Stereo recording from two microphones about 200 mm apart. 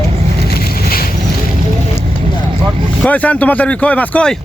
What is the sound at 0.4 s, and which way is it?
Boat, 50° left (ahead or behind).